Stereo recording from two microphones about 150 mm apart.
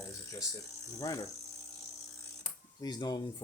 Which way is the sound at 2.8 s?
25° left (ahead or behind).